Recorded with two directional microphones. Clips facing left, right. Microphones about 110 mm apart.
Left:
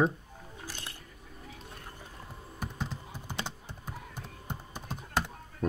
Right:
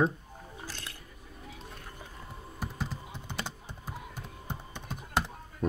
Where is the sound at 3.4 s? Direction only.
10° right (ahead or behind).